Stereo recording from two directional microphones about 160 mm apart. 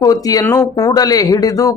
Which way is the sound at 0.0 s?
20° left (ahead or behind).